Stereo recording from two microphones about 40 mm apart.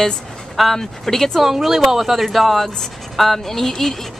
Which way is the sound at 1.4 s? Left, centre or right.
Centre.